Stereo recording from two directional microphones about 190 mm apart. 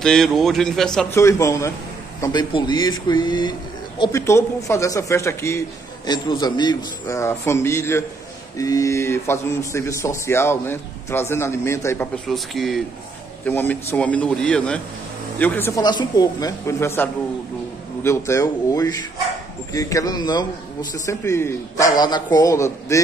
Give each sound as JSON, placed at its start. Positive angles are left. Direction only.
{"t": 0.0, "sound": "a man's voice", "side_deg": 0}
{"t": 1.2, "sound": "a man's voice", "side_deg": 15}
{"t": 12.3, "sound": "a man's voice", "side_deg": 0}